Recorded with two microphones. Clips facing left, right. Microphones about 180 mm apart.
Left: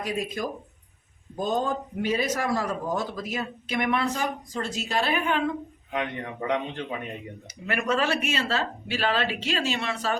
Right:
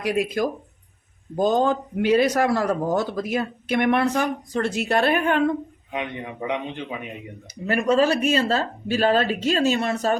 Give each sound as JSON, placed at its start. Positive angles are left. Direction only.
{"t": 0.0, "sound": "speech", "side_deg": -75}
{"t": 1.4, "sound": "a man's voice", "side_deg": -90}
{"t": 5.9, "sound": "a man's voice", "side_deg": -15}
{"t": 7.7, "sound": "speech", "side_deg": -35}